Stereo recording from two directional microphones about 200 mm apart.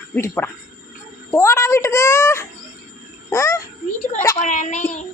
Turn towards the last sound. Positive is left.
turn(degrees=35)  # may be behind; listen again after turning